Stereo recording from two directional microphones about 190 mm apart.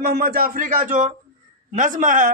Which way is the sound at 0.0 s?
55° right (ahead or behind).